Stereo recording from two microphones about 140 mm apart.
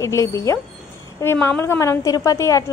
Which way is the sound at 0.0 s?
20° left (ahead or behind).